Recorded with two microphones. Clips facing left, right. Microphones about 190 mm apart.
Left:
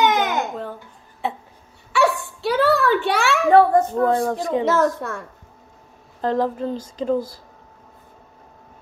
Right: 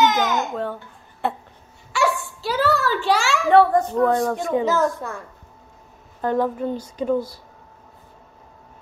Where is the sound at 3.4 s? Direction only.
35° left (ahead or behind).